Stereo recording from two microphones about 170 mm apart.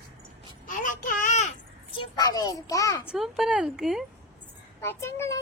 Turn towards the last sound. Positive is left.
turn(degrees=15)  # may be behind; listen again after turning